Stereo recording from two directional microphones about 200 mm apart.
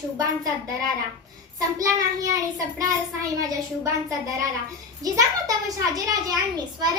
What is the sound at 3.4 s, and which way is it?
A woman's voice, 15° right (ahead or behind).